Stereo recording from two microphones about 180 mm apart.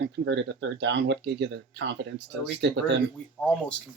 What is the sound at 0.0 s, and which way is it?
Speech, 80° right.